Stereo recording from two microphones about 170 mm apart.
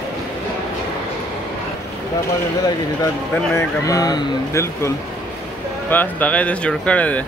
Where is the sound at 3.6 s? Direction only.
20° left (ahead or behind).